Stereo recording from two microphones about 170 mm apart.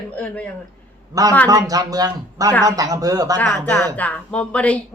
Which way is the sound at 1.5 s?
20° right (ahead or behind).